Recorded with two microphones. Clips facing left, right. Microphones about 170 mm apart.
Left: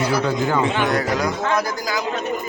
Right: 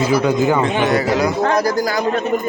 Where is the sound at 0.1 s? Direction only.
15° right (ahead or behind).